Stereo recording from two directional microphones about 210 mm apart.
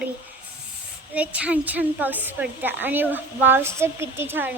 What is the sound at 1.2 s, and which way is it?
A child's voice, 5° right (ahead or behind).